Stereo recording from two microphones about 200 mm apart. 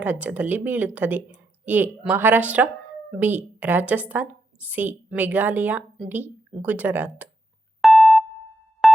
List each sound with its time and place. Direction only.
0.0 s a woman's voice: 10° right (ahead or behind)
7.8 s a sound: centre (ahead or behind)
8.8 s music: centre (ahead or behind)